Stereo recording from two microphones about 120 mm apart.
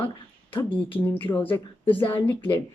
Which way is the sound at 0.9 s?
15° left (ahead or behind).